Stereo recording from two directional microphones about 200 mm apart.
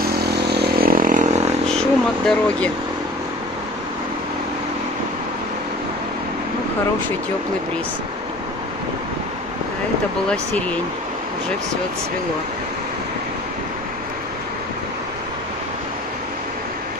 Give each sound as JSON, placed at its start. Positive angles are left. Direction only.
{"t": 0.0, "sound": "vehicle", "side_deg": -55}
{"t": 1.8, "sound": "vehicle", "side_deg": 5}
{"t": 10.3, "sound": "speech", "side_deg": 5}